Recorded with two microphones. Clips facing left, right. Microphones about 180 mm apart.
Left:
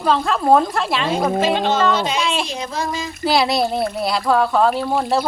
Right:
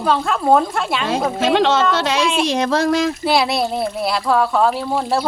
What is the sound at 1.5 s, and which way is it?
Speech, 80° right.